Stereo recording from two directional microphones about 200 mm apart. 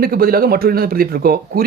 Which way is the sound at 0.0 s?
50° right (ahead or behind).